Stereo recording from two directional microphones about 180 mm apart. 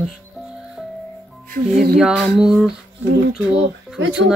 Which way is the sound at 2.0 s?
5° right (ahead or behind).